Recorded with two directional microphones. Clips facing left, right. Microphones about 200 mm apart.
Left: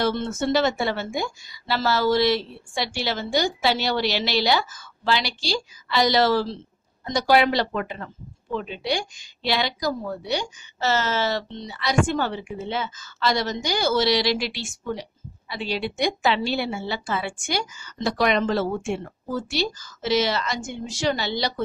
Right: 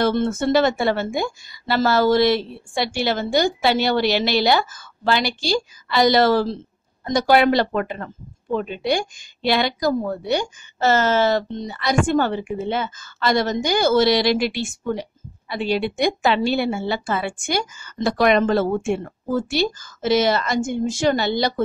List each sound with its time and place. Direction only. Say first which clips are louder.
0.0 s a woman's voice: right 4 dB; 50° right (ahead or behind)